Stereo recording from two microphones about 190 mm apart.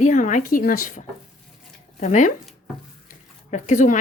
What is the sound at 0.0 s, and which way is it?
Speech, 45° left (ahead or behind).